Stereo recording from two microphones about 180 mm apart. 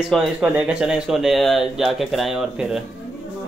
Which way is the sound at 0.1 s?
5° right (ahead or behind).